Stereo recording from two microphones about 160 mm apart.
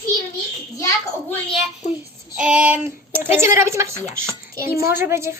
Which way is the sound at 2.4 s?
5° right (ahead or behind).